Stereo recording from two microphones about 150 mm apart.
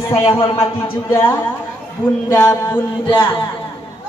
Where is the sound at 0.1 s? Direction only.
40° left (ahead or behind).